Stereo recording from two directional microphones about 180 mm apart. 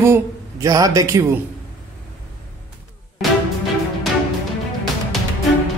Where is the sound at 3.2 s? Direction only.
Centre (ahead or behind).